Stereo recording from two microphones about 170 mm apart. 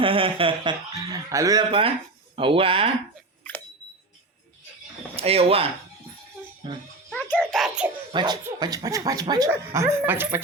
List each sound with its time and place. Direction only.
0.0 s speech: 30° right (ahead or behind)
2.3 s speech: 30° right (ahead or behind)
3.4 s a sound: 10° left (ahead or behind)
5.1 s speech: 35° right (ahead or behind)
6.6 s speech: 25° right (ahead or behind)
7.1 s a sound: 5° left (ahead or behind)
7.3 s a child's voice: 5° right (ahead or behind)
8.1 s speech: 25° right (ahead or behind)
9.5 s speech: 10° right (ahead or behind)